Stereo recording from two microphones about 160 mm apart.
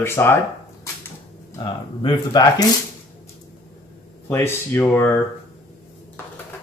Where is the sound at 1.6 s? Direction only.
30° left (ahead or behind).